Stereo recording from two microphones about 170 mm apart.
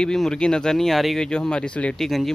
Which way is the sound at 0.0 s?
5° left (ahead or behind).